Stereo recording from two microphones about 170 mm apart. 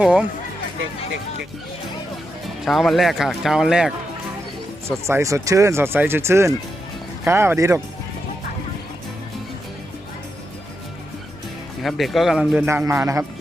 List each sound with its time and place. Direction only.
0.0 s speech: 5° right (ahead or behind)
2.6 s speech: centre (ahead or behind)
4.9 s speech: 15° right (ahead or behind)
11.8 s speech: centre (ahead or behind)
12.6 s speech: 15° right (ahead or behind)